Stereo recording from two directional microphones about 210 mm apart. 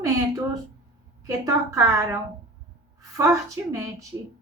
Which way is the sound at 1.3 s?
15° right (ahead or behind).